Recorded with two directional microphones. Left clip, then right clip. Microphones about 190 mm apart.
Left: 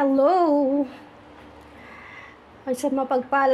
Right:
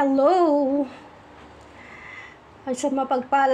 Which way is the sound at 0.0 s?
Centre (ahead or behind).